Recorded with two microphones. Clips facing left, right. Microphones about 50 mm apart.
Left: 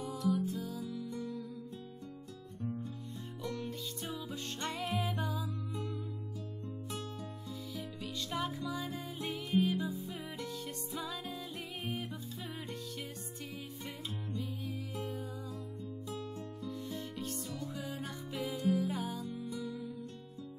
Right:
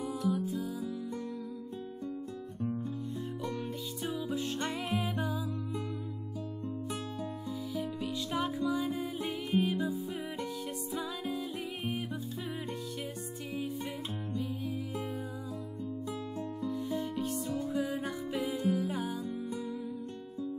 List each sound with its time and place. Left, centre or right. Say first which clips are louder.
0.3 s music: left 1 dB; centre
0.7 s music: right 4 dB; centre
2.6 s music: right 5 dB; right
3.5 s music: right 3 dB; centre
7.7 s music: right 7 dB; centre
9.6 s music: right 1 dB; centre
14.4 s music: right 5 dB; centre
16.7 s music: right 8 dB; centre
17.5 s music: right 8 dB; right
18.7 s music: left 2 dB; centre
19.4 s music: right 3 dB; right